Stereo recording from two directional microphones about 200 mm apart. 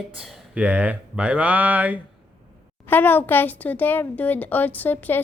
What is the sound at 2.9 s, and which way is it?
Speech, 10° left (ahead or behind).